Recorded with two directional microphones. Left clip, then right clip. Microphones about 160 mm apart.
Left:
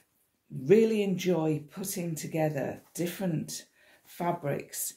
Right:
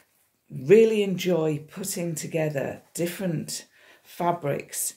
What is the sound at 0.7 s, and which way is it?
Speech, 25° right (ahead or behind).